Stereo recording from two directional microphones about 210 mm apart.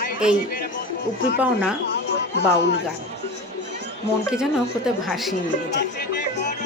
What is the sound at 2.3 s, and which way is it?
Speech, 55° left (ahead or behind).